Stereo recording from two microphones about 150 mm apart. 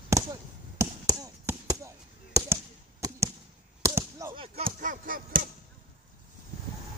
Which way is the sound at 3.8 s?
20° right (ahead or behind).